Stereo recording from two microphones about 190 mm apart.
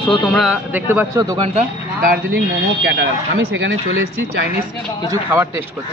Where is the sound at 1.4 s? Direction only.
35° right (ahead or behind).